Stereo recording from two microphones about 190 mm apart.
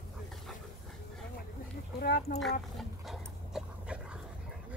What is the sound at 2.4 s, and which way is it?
Dog, centre (ahead or behind).